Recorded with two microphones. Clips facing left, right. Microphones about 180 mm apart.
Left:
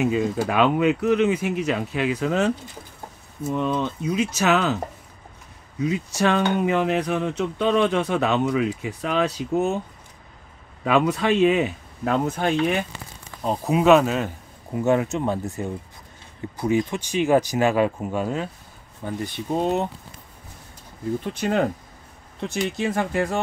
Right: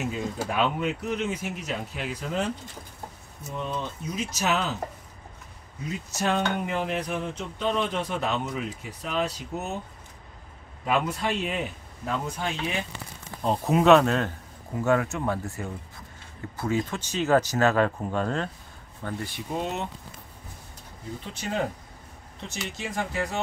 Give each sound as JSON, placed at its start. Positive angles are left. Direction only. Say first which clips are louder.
{"t": 0.0, "sound": "speech", "louder": "left 8 dB", "side_deg": 75}
{"t": 5.8, "sound": "speech", "louder": "left 9 dB", "side_deg": 85}
{"t": 10.8, "sound": "speech", "louder": "left 6 dB", "side_deg": 85}
{"t": 12.4, "sound": "speech", "louder": "left 9 dB", "side_deg": 60}
{"t": 13.4, "sound": "speech", "louder": "left 1 dB", "side_deg": 0}
{"t": 14.8, "sound": "speech", "louder": "left 4 dB", "side_deg": 20}
{"t": 19.0, "sound": "speech", "louder": "left 4 dB", "side_deg": 20}
{"t": 19.5, "sound": "speech", "louder": "left 8 dB", "side_deg": 40}
{"t": 21.2, "sound": "speech", "louder": "left 6 dB", "side_deg": 55}